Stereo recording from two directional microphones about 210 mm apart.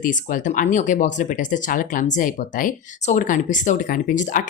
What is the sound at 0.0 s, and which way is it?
Speech, 40° left (ahead or behind).